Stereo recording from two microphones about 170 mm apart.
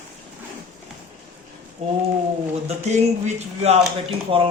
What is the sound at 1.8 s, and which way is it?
Speech, 40° right (ahead or behind).